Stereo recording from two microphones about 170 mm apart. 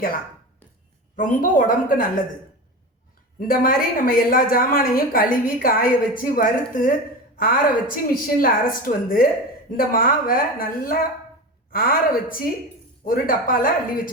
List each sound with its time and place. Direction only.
1.1 s a woman's voice: 55° left (ahead or behind)
3.4 s a woman's voice: 55° left (ahead or behind)